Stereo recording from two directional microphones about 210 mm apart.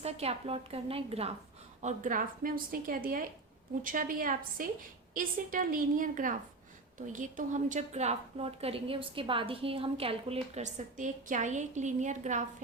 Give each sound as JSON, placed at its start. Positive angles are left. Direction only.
{"t": 0.0, "sound": "a woman's voice", "side_deg": -30}